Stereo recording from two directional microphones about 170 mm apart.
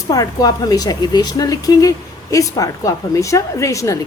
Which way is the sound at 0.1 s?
20° left (ahead or behind).